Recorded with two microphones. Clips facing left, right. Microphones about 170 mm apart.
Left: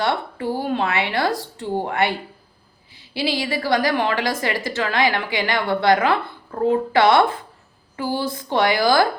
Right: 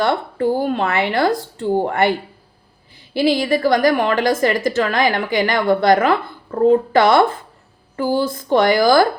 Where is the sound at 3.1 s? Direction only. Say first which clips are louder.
Right 7 dB; 50° right (ahead or behind).